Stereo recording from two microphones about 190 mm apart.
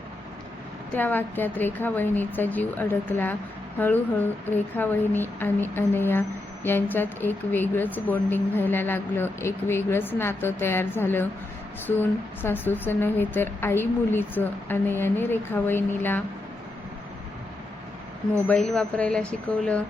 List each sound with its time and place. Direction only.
0.9 s speech: 10° left (ahead or behind)
18.4 s speech: 5° left (ahead or behind)